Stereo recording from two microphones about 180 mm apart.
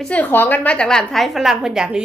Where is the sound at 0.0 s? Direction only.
10° left (ahead or behind).